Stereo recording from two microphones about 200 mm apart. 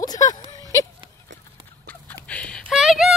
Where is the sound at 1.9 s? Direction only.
5° left (ahead or behind).